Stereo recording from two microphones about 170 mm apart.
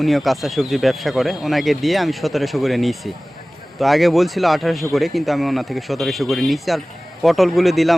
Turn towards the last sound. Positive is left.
turn(degrees=0)  # may be behind; listen again after turning